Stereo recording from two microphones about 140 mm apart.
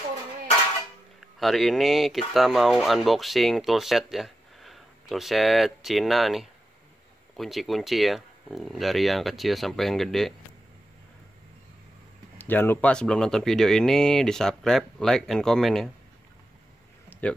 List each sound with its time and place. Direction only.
1.2 s speech: centre (ahead or behind)
12.4 s speech: 15° left (ahead or behind)
17.1 s a sound: 15° left (ahead or behind)